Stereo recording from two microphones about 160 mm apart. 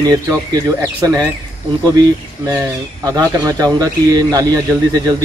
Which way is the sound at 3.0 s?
20° right (ahead or behind).